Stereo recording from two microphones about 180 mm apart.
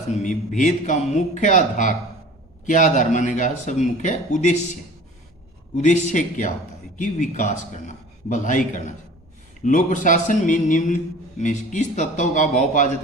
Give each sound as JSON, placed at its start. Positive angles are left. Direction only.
{"t": 0.1, "sound": "a man's voice", "side_deg": 45}
{"t": 5.7, "sound": "a man's voice", "side_deg": 45}